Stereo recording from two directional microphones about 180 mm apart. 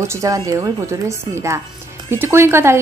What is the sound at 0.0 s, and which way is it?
Speech, 15° right (ahead or behind).